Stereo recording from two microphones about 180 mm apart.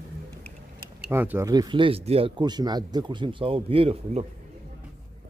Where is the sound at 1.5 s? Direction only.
25° right (ahead or behind).